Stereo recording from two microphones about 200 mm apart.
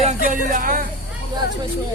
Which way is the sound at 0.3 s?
40° right (ahead or behind).